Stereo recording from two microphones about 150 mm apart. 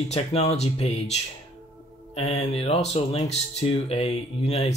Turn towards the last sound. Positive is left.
turn(degrees=45)  # may be behind; listen again after turning